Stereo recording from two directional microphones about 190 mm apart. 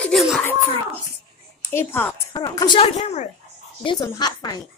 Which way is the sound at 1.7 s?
10° left (ahead or behind).